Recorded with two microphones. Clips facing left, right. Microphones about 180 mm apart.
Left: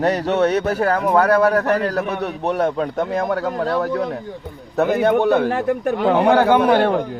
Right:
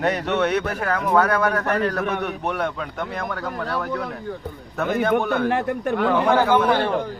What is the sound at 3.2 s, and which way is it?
Speech, 25° left (ahead or behind).